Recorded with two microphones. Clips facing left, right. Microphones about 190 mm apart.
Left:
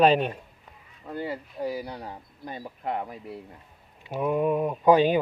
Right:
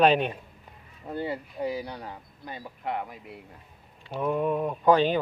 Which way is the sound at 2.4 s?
45° left (ahead or behind).